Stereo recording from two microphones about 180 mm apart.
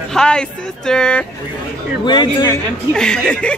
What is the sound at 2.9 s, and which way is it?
Speech, 5° left (ahead or behind).